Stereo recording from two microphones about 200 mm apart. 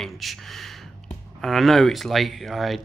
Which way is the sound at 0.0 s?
Centre (ahead or behind).